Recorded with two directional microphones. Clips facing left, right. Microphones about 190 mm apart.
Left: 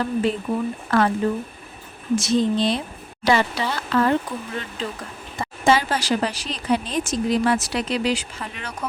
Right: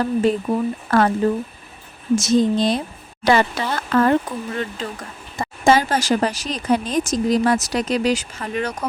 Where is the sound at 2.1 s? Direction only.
45° right (ahead or behind).